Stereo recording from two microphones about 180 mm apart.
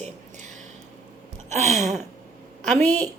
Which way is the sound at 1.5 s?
40° right (ahead or behind).